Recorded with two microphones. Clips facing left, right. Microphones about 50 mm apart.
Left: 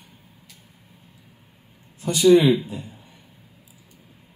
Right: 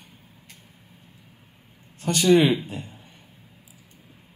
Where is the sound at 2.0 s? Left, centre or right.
Right.